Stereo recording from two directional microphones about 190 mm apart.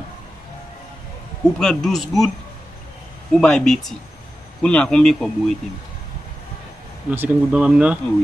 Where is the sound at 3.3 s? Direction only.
5° left (ahead or behind).